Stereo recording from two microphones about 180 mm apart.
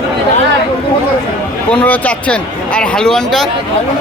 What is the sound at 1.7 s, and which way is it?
A man's voice, 5° left (ahead or behind).